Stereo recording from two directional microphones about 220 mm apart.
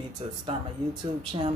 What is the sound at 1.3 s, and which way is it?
Speech, 20° right (ahead or behind).